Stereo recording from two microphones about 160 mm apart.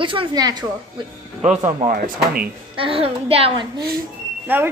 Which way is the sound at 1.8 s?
65° right (ahead or behind).